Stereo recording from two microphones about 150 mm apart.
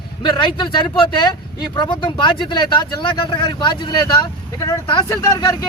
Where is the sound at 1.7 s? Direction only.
30° left (ahead or behind).